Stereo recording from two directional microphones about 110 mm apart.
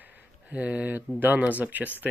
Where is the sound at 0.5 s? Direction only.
10° right (ahead or behind).